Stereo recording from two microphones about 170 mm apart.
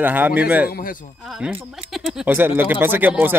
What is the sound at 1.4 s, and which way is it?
Speech, 5° right (ahead or behind).